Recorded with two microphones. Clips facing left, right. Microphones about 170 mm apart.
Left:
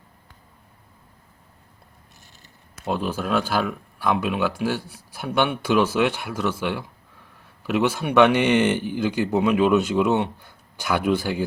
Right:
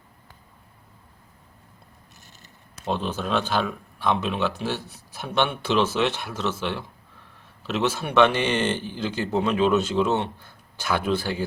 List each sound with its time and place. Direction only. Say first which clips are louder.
2.8 s speech: left 2 dB; 10° left (ahead or behind)